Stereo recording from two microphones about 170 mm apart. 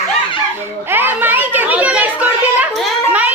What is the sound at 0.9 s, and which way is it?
Children playing, 10° right (ahead or behind).